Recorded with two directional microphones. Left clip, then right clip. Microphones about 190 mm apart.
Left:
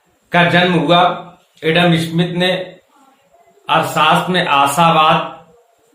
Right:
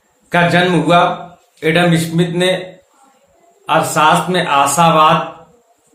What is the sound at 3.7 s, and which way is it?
A man's voice, 25° right (ahead or behind).